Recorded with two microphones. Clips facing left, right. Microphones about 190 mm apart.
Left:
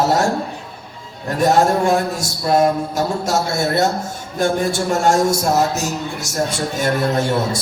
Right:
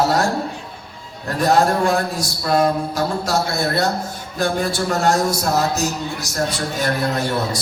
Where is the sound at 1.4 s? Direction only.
25° left (ahead or behind).